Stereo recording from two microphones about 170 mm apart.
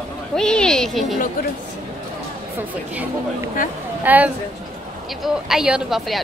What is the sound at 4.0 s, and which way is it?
A woman's voice, 10° right (ahead or behind).